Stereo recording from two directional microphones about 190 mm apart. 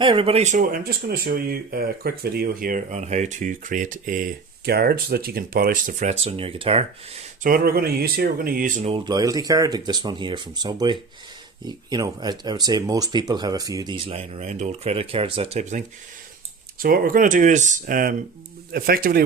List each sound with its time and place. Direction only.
0.0 s speech: 25° right (ahead or behind)
7.4 s speech: 50° right (ahead or behind)
8.9 s speech: 20° right (ahead or behind)
16.7 s speech: 50° right (ahead or behind)